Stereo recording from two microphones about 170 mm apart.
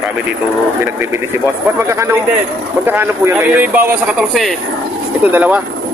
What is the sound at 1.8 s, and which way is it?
A man's voice, 15° right (ahead or behind).